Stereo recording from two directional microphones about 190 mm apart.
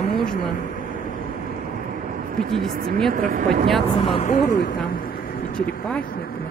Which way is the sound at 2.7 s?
50° right (ahead or behind).